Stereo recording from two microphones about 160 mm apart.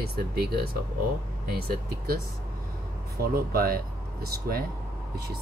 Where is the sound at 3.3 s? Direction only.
70° right (ahead or behind).